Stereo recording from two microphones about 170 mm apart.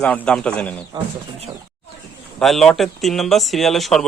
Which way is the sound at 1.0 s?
25° right (ahead or behind).